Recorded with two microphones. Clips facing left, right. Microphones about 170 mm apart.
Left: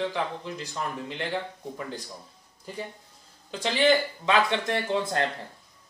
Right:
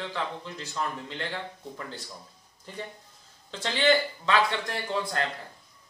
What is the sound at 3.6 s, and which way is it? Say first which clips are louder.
Speech: left 2 dB; 15° left (ahead or behind).